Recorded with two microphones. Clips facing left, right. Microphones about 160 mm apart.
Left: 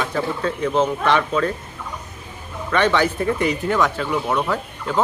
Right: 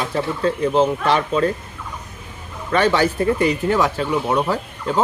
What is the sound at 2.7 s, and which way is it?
Speech, 35° right (ahead or behind).